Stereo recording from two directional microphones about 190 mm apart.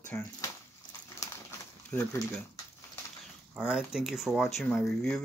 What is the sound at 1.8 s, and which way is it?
Speech, 15° left (ahead or behind).